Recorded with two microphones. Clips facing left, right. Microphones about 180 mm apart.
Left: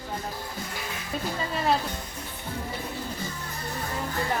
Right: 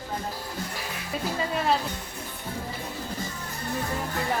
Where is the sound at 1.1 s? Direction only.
5° right (ahead or behind).